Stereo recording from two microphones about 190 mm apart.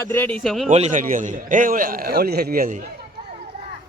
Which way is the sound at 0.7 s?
40° right (ahead or behind).